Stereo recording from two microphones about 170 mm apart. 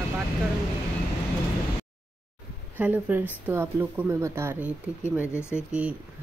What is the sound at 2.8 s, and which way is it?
A woman's voice, 10° right (ahead or behind).